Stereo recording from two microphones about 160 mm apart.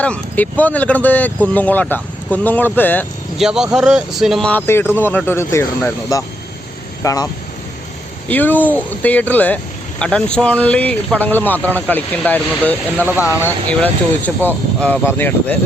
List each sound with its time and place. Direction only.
0.0 s speech: 10° left (ahead or behind)
3.3 s speech: 5° right (ahead or behind); by 7.3 s 20° left (ahead or behind)
8.3 s speech: 10° left (ahead or behind)
13.1 s speech: 10° right (ahead or behind)
13.4 s speech: 10° left (ahead or behind)